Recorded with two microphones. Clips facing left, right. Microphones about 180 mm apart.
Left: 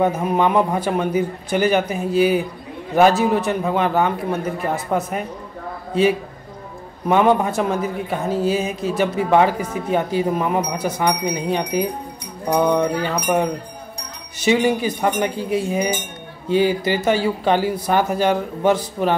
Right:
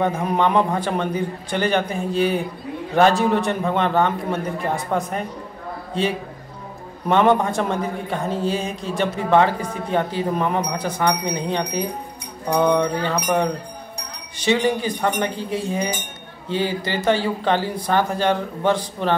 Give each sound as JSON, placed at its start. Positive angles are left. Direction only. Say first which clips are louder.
{"t": 0.0, "sound": "a man's voice", "louder": "left 2 dB", "side_deg": 5}
{"t": 7.1, "sound": "speech", "louder": "left 1 dB", "side_deg": 5}
{"t": 14.4, "sound": "speech", "louder": "left 2 dB", "side_deg": 10}